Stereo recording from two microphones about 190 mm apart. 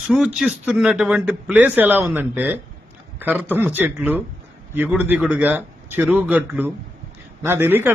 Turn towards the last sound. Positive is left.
turn(degrees=-10)  # may be behind; listen again after turning